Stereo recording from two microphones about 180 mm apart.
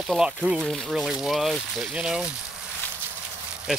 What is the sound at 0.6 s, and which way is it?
Speech, centre (ahead or behind).